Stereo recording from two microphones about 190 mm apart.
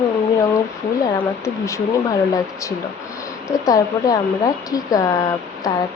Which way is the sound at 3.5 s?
20° left (ahead or behind).